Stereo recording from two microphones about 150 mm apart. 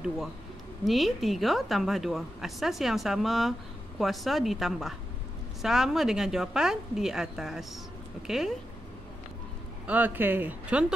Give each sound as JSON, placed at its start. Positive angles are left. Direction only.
{"t": 0.8, "sound": "a woman's voice", "side_deg": 0}
{"t": 9.8, "sound": "speech", "side_deg": -10}